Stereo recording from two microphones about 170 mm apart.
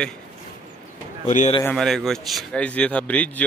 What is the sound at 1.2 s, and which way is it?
Speech, 45° left (ahead or behind).